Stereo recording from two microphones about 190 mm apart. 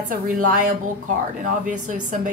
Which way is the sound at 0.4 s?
50° right (ahead or behind).